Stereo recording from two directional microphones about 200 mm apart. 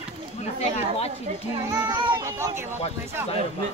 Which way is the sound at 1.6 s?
20° right (ahead or behind).